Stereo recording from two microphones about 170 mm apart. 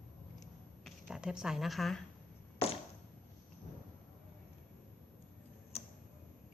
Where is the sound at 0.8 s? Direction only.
5° right (ahead or behind).